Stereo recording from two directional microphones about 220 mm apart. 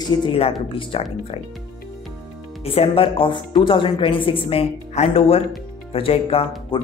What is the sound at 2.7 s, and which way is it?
A woman's voice, 25° left (ahead or behind).